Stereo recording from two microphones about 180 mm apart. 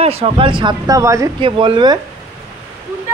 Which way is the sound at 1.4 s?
25° right (ahead or behind).